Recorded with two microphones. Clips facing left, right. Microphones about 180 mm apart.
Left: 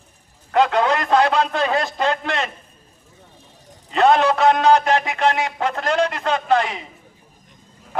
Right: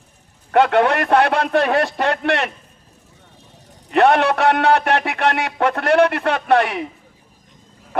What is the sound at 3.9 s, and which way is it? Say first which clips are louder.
A man's voice: right 1 dB; 65° right (ahead or behind).